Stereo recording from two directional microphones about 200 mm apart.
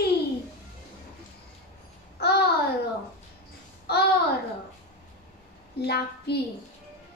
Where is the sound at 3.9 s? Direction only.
55° left (ahead or behind).